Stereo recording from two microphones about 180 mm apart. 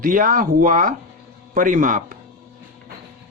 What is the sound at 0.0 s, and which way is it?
Speech, 50° right (ahead or behind).